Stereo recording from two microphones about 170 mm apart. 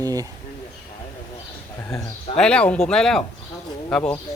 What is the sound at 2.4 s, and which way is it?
Speech, 5° left (ahead or behind).